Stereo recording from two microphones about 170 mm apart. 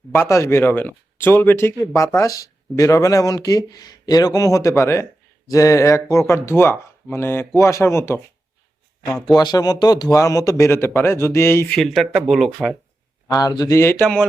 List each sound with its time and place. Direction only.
0.1 s speech: 15° left (ahead or behind)
9.3 s speech: 25° left (ahead or behind)
11.8 s speech: centre (ahead or behind)
13.2 s speech: 20° left (ahead or behind); by 14.3 s 5° left (ahead or behind)